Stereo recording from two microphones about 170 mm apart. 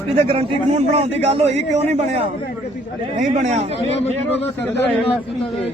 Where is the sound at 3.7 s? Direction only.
40° left (ahead or behind).